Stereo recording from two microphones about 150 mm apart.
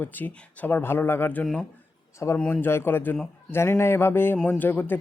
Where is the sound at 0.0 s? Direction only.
10° left (ahead or behind).